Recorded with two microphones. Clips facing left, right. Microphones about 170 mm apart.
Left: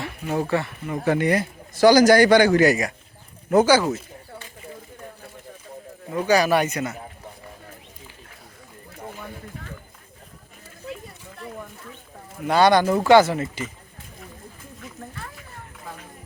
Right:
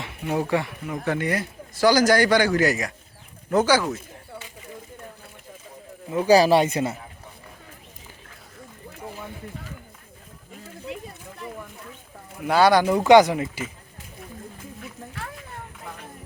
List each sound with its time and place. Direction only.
0.0 s speech: 15° right (ahead or behind)
1.0 s a man's voice: 20° left (ahead or behind)
6.2 s speech: 30° right (ahead or behind)
12.4 s speech: 5° right (ahead or behind)
13.1 s speech: 15° right (ahead or behind)